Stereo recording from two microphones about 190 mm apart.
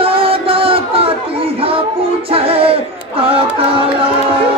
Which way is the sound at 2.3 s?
30° right (ahead or behind).